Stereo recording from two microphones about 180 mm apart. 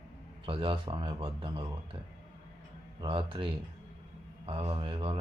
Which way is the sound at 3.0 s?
30° right (ahead or behind).